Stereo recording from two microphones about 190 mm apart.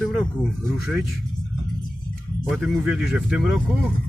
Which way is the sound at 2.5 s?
Centre (ahead or behind).